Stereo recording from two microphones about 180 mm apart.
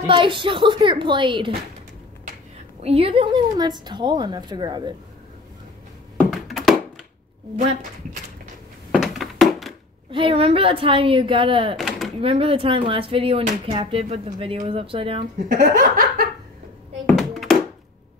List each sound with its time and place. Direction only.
0.0 s a woman's voice: 30° right (ahead or behind)
2.8 s a woman's voice: 35° right (ahead or behind)
6.3 s a sound: centre (ahead or behind)
7.5 s speech: 40° right (ahead or behind)
8.9 s a sound: centre (ahead or behind)
10.1 s a woman's voice: 30° right (ahead or behind)
11.7 s speech: centre (ahead or behind)
12.2 s speech: 30° right (ahead or behind)
15.4 s laughter: 45° right (ahead or behind)
17.0 s a sound: centre (ahead or behind)